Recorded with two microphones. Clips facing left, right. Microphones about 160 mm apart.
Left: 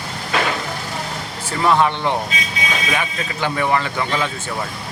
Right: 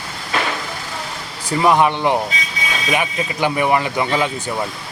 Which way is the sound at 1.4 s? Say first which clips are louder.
Right 2 dB; 15° right (ahead or behind).